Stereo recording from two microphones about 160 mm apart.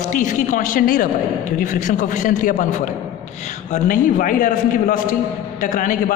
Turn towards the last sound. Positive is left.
turn(degrees=55)  # may be behind; listen again after turning